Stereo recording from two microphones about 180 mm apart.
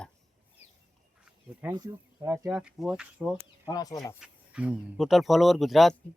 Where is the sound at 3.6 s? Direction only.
20° left (ahead or behind).